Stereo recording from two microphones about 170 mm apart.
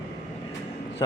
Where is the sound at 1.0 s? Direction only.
20° left (ahead or behind).